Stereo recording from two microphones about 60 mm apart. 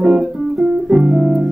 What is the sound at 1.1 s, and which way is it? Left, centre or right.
Piano, centre.